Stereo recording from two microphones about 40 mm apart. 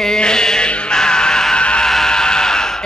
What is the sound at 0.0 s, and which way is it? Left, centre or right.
Music, centre.